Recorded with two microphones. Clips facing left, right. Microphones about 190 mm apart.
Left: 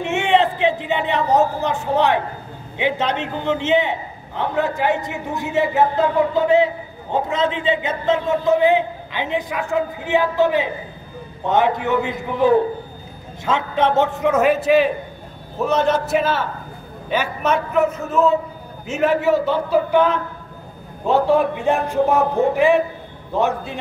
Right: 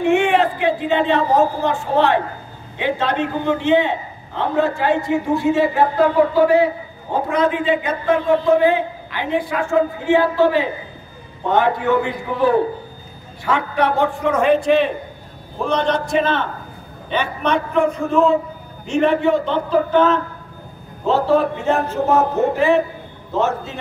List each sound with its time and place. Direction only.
0.0 s a man's voice: 20° left (ahead or behind)
14.3 s a man's voice: 5° left (ahead or behind)